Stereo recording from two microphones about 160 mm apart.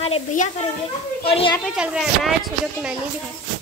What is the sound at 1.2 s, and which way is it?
Speech, 40° left (ahead or behind).